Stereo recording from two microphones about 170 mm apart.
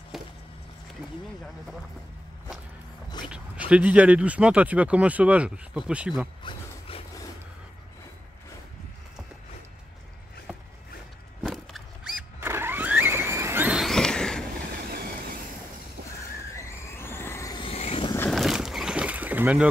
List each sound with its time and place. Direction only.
0.1 s a sound: centre (ahead or behind)
3.3 s speech: 5° right (ahead or behind)
6.4 s speech: 30° left (ahead or behind)
11.4 s vehicle: centre (ahead or behind)
16.5 s vehicle: 15° left (ahead or behind)
17.6 s vehicle: 35° left (ahead or behind)
18.3 s boat: centre (ahead or behind)